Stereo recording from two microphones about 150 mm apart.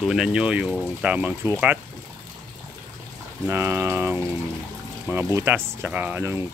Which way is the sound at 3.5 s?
15° right (ahead or behind).